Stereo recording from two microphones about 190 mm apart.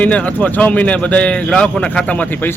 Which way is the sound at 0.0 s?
5° left (ahead or behind).